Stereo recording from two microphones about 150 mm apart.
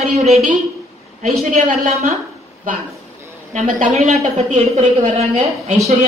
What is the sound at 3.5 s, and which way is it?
A woman's voice, 55° right (ahead or behind).